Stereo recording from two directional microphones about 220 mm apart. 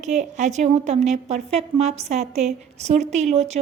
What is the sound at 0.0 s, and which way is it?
A woman's voice, 30° right (ahead or behind).